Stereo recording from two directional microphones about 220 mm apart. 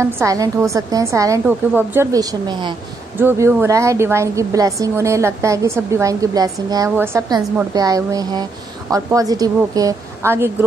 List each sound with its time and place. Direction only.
0.0 s a woman's voice: 15° right (ahead or behind)